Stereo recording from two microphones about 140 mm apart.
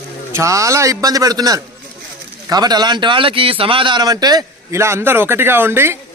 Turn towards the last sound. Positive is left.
turn(degrees=-15)  # may be behind; listen again after turning